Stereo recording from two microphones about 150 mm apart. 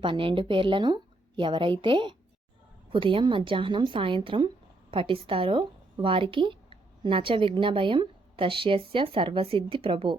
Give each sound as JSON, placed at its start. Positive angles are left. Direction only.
{"t": 0.0, "sound": "a woman's voice", "side_deg": -35}